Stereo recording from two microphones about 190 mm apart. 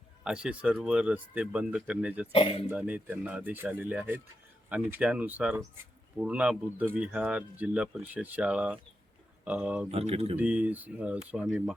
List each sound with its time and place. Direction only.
0.3 s speech: 5° right (ahead or behind)
2.3 s speech: 30° left (ahead or behind)
2.6 s speech: 10° right (ahead or behind)
9.9 s speech: 30° right (ahead or behind)
10.3 s speech: 5° right (ahead or behind)